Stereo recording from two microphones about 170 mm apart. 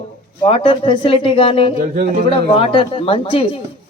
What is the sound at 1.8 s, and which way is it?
Speech, 50° right (ahead or behind).